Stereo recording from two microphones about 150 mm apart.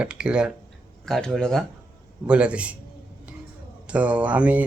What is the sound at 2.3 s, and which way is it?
Speech, 10° right (ahead or behind).